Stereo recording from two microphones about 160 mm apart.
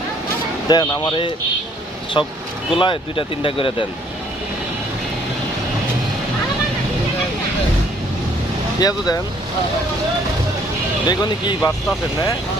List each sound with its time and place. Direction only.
0.7 s speech: 25° left (ahead or behind)
8.8 s speech: 25° left (ahead or behind)
11.1 s speech: 25° left (ahead or behind)